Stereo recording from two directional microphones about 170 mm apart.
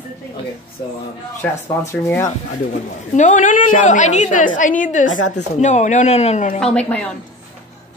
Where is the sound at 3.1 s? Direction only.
45° left (ahead or behind).